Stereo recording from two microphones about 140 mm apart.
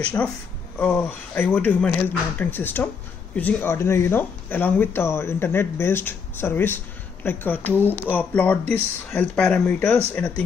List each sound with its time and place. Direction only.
0.0 s speech: 10° left (ahead or behind)